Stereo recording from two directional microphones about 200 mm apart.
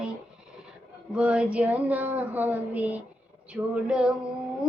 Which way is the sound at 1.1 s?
5° right (ahead or behind).